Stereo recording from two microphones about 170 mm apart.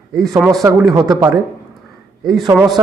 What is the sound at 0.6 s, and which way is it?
Speech, 20° right (ahead or behind).